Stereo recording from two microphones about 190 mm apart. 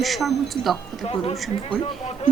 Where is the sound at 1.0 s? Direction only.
30° left (ahead or behind).